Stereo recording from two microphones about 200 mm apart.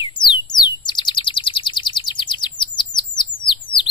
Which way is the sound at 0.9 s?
20° left (ahead or behind).